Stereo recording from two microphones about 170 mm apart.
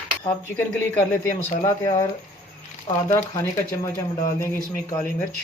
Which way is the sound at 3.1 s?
15° left (ahead or behind).